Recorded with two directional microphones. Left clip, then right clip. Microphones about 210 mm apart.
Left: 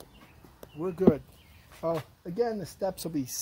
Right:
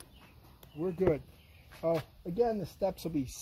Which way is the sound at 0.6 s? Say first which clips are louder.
Left 5 dB; 15° left (ahead or behind).